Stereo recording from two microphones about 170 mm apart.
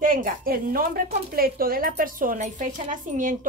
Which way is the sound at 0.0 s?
55° right (ahead or behind).